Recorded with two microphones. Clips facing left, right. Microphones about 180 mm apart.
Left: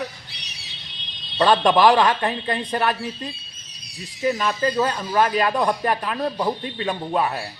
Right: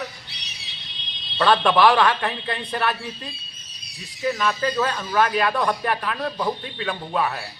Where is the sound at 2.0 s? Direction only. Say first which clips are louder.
Left 2 dB; 40° left (ahead or behind).